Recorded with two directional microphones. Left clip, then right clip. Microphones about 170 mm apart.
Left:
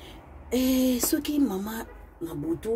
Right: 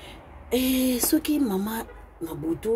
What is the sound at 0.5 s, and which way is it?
Speech, 10° right (ahead or behind).